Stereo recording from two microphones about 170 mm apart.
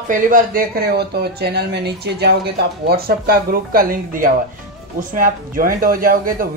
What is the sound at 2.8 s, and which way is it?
Speech, 60° right (ahead or behind).